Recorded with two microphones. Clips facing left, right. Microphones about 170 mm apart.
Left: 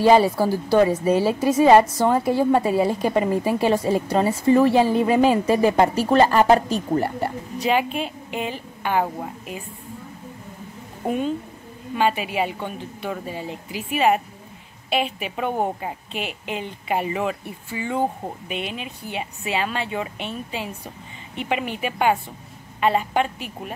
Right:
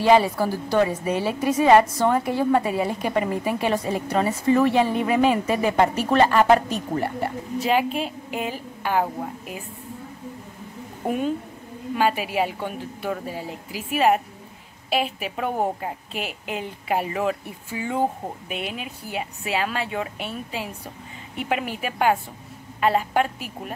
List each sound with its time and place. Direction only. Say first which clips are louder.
0.0 s a woman's voice: left 2 dB; 35° left (ahead or behind)
7.5 s a woman's voice: even; centre (ahead or behind)
11.1 s a woman's voice: left 1 dB; 10° right (ahead or behind)